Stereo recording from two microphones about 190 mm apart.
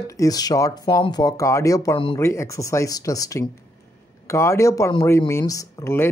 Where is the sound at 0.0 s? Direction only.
15° left (ahead or behind).